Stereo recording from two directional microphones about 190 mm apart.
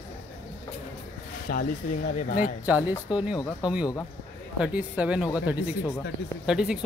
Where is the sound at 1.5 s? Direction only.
50° left (ahead or behind).